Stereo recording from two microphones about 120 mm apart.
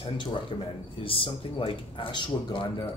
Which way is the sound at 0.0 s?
45° left (ahead or behind).